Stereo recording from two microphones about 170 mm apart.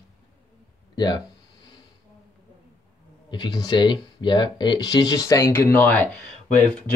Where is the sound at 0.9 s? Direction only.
25° left (ahead or behind).